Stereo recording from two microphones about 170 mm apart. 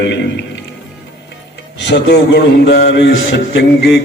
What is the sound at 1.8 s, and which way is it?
Music, 90° left.